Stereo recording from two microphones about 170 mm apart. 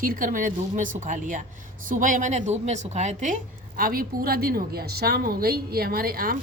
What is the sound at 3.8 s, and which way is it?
A woman's voice, 60° right (ahead or behind).